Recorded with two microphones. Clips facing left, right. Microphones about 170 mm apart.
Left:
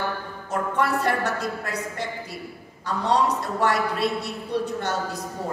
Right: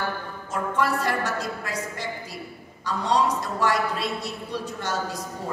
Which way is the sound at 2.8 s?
60° left (ahead or behind).